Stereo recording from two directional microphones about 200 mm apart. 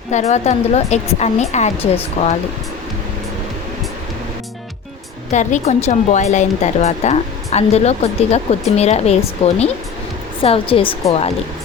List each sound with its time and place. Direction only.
0.1 s speech: 35° left (ahead or behind)
5.3 s a woman's voice: 35° left (ahead or behind)